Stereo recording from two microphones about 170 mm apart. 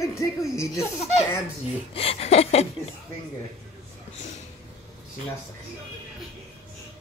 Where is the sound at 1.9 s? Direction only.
35° left (ahead or behind).